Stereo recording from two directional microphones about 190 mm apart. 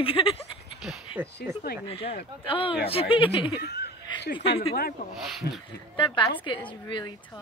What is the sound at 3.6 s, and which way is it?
Speech, 60° left (ahead or behind).